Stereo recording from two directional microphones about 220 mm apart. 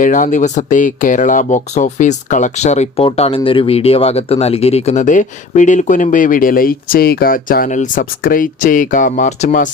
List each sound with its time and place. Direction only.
0.0 s speech: 35° left (ahead or behind)